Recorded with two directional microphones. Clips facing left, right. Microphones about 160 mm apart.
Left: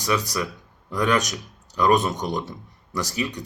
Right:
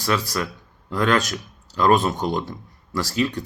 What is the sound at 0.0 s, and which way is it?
Speech, 15° left (ahead or behind).